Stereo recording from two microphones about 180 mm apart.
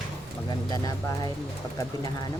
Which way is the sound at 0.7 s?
20° left (ahead or behind).